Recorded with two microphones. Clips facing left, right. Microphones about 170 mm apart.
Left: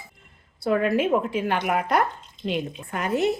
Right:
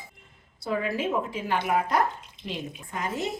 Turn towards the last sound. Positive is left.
turn(degrees=65)  # may be behind; listen again after turning